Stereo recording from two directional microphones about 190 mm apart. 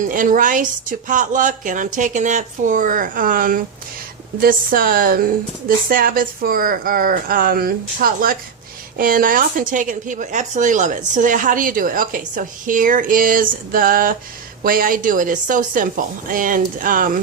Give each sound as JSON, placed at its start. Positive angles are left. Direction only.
{"t": 0.0, "sound": "a woman's voice", "side_deg": -45}